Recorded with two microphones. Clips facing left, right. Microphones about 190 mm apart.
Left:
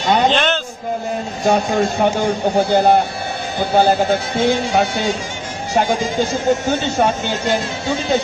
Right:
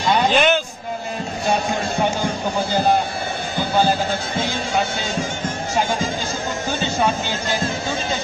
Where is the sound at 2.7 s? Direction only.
60° left (ahead or behind).